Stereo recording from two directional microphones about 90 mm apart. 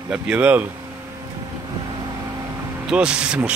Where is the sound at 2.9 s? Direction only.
10° right (ahead or behind).